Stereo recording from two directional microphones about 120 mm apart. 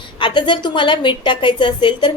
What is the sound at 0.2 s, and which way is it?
A woman's voice, 40° left (ahead or behind).